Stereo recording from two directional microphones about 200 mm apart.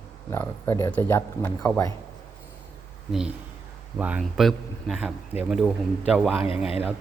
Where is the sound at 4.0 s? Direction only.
5° right (ahead or behind).